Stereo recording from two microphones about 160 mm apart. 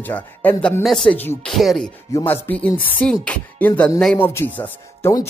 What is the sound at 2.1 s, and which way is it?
Speech, 15° left (ahead or behind).